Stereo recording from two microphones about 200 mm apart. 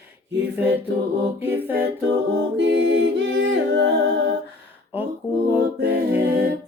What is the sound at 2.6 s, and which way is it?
A capella, 65° right (ahead or behind).